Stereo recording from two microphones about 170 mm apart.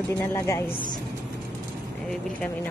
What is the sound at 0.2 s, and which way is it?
Speech, 15° left (ahead or behind).